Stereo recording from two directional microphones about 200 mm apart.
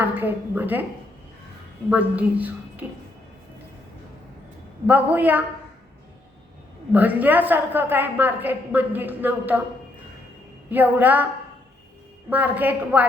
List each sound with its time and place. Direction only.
0.0 s a woman's voice: 10° right (ahead or behind)
1.9 s a woman's voice: 10° right (ahead or behind)
4.9 s a woman's voice: 10° right (ahead or behind)
6.9 s a woman's voice: 10° right (ahead or behind)
10.7 s a woman's voice: 10° right (ahead or behind)
12.3 s a woman's voice: 10° right (ahead or behind)